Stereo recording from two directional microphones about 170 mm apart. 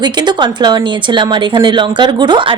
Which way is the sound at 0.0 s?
25° right (ahead or behind).